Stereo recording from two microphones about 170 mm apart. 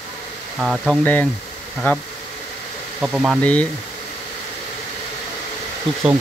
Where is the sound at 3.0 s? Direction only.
5° right (ahead or behind).